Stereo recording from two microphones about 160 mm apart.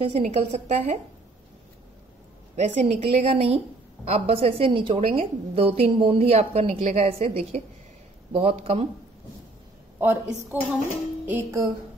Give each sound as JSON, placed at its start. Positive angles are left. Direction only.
{"t": 0.0, "sound": "a woman's voice", "side_deg": -40}
{"t": 2.5, "sound": "a woman's voice", "side_deg": -45}
{"t": 9.9, "sound": "a woman's voice", "side_deg": -10}